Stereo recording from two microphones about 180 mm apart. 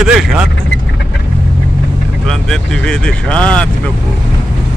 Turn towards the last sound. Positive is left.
turn(degrees=5)  # may be behind; listen again after turning